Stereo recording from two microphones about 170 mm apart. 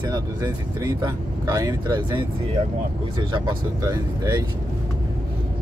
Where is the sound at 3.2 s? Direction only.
25° right (ahead or behind).